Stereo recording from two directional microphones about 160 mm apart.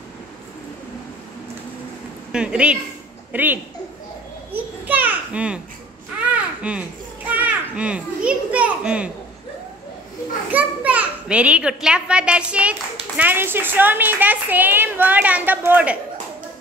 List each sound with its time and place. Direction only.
2.3 s a woman's voice: 5° right (ahead or behind)
4.5 s children playing: 10° right (ahead or behind)
10.5 s a child's voice: 10° right (ahead or behind)